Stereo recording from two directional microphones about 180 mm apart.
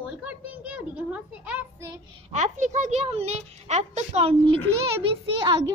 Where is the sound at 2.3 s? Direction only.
40° right (ahead or behind).